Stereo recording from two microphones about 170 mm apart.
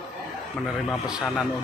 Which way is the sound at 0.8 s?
Centre (ahead or behind).